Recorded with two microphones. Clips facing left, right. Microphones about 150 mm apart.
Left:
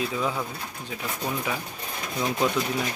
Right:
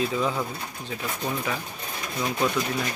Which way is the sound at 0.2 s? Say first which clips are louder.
Right 2 dB; 5° left (ahead or behind).